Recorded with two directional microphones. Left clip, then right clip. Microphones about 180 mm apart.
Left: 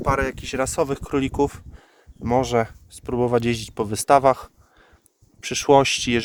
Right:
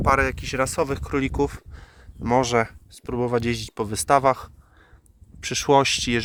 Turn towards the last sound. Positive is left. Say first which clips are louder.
# left 2 dB
turn(degrees=20)  # may be behind; listen again after turning